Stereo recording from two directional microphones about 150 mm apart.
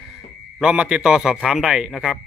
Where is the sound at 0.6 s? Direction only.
5° right (ahead or behind).